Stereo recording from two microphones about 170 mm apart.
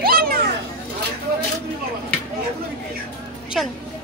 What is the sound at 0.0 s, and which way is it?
Children playing, 65° right (ahead or behind).